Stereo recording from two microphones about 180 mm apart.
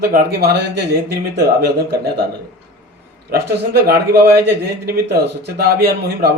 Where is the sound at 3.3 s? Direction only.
55° right (ahead or behind).